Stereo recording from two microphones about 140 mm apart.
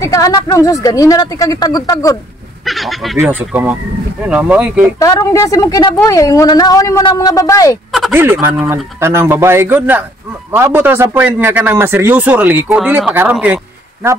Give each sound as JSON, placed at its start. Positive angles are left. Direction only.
{"t": 0.0, "sound": "speech", "side_deg": 25}
{"t": 2.6, "sound": "speech", "side_deg": 0}
{"t": 3.2, "sound": "a man's voice", "side_deg": -10}
{"t": 4.9, "sound": "speech", "side_deg": 25}
{"t": 8.1, "sound": "a man's voice", "side_deg": -15}